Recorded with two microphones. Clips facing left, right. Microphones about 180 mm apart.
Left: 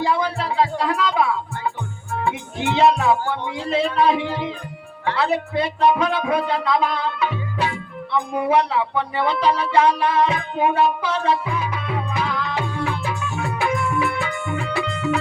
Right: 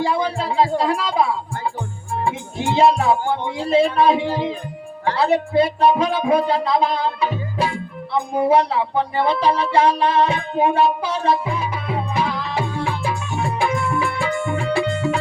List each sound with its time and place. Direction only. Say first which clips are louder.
0.0 s music: right 1 dB; 35° right (ahead or behind)